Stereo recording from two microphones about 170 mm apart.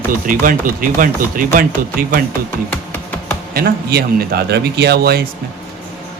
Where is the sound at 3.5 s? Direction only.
65° right (ahead or behind).